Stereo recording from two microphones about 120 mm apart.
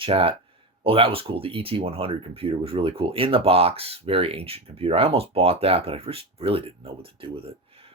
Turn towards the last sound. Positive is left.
turn(degrees=-50)  # may be behind; listen again after turning